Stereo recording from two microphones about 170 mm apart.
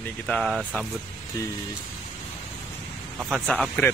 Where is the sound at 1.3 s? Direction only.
20° left (ahead or behind).